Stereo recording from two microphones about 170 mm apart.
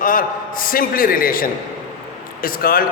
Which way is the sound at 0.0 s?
55° left (ahead or behind).